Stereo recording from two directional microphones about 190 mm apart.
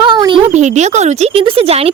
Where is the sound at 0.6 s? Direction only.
35° right (ahead or behind).